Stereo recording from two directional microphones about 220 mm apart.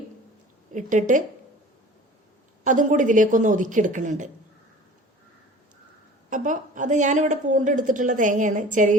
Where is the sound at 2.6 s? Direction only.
35° right (ahead or behind).